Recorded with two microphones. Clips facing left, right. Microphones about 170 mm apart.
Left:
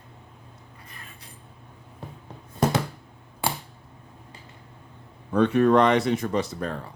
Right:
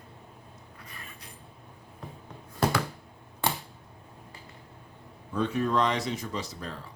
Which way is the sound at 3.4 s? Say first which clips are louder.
Left 1 dB; 10° left (ahead or behind).